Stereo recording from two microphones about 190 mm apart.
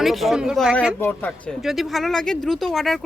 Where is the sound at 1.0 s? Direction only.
10° left (ahead or behind).